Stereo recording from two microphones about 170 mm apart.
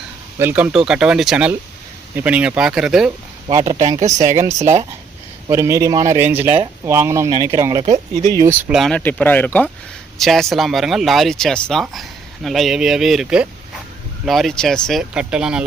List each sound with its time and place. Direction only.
0.3 s speech: 10° right (ahead or behind)
3.6 s speech: 40° right (ahead or behind)
5.5 s speech: 15° right (ahead or behind)
7.8 s speech: 40° right (ahead or behind)
8.4 s speech: 10° right (ahead or behind)
8.8 s speech: 5° left (ahead or behind)